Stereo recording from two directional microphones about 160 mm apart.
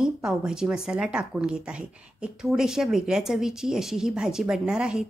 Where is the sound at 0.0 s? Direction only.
5° right (ahead or behind).